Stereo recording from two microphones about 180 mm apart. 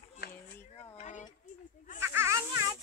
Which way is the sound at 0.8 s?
40° left (ahead or behind).